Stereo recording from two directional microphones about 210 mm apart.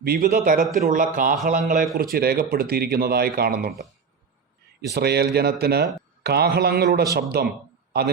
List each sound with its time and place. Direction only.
0.0 s a man's voice: 45° right (ahead or behind)
2.1 s speech: 50° right (ahead or behind)
4.9 s speech: 50° right (ahead or behind)